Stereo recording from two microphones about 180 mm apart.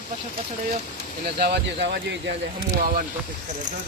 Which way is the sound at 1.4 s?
60° right (ahead or behind).